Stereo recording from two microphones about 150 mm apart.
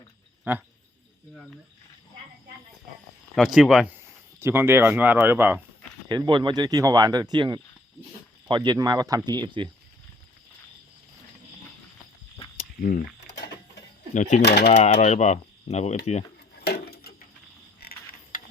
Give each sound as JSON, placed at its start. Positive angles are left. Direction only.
{"t": 0.5, "sound": "speech", "side_deg": -15}
{"t": 3.3, "sound": "speech", "side_deg": 0}
{"t": 3.9, "sound": "speech", "side_deg": -15}
{"t": 6.1, "sound": "speech", "side_deg": -30}
{"t": 12.8, "sound": "speech", "side_deg": 65}
{"t": 14.1, "sound": "speech", "side_deg": 55}
{"t": 14.4, "sound": "speech", "side_deg": 90}
{"t": 14.7, "sound": "mechanisms", "side_deg": 50}
{"t": 16.6, "sound": "a sound", "side_deg": 90}
{"t": 17.7, "sound": "coin", "side_deg": 75}